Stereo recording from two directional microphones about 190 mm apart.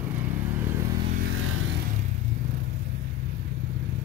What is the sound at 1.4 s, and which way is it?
Vehicle, 90° right.